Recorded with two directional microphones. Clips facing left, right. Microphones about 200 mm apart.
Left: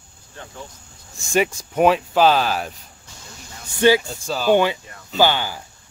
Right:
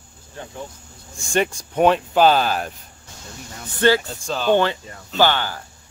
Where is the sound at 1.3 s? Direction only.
5° left (ahead or behind).